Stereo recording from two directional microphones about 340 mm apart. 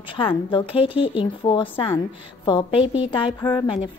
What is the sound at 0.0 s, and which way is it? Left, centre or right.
Speech, centre.